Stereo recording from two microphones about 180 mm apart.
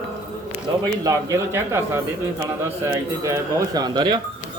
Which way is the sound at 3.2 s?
20° right (ahead or behind).